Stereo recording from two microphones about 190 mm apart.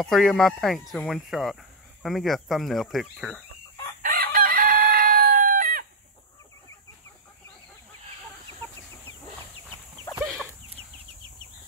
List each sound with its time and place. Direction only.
0.0 s speech: centre (ahead or behind)
4.0 s chicken: 45° right (ahead or behind)
10.2 s chicken: 5° right (ahead or behind)